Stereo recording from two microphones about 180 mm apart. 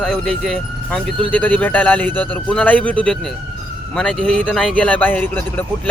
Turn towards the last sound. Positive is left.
turn(degrees=10)  # may be behind; listen again after turning